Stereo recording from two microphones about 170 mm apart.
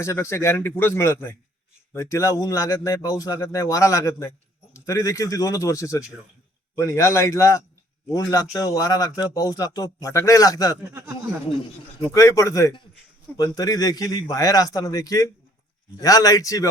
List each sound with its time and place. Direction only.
0.0 s a man's voice: 15° left (ahead or behind)
10.9 s speech: 15° right (ahead or behind)
12.0 s speech: 20° left (ahead or behind)